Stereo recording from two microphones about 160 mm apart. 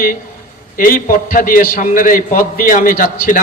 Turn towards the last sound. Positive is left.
turn(degrees=60)  # may be behind; listen again after turning